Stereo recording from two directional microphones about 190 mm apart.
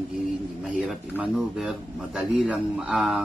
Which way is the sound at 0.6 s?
5° right (ahead or behind).